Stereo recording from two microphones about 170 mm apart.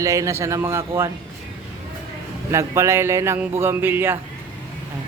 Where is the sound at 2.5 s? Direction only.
15° right (ahead or behind).